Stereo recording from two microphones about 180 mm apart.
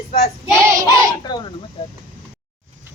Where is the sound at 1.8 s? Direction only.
30° left (ahead or behind).